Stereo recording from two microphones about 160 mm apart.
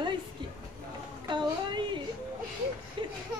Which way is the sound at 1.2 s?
30° right (ahead or behind).